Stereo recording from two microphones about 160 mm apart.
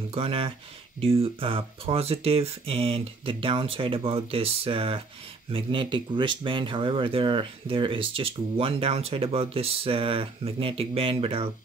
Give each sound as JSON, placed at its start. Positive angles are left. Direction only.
{"t": 0.1, "sound": "speech", "side_deg": -35}